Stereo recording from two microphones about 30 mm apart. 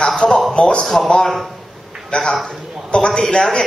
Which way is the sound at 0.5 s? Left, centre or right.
Left.